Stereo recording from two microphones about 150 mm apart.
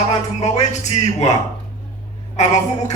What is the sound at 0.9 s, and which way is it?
Speech, 45° left (ahead or behind).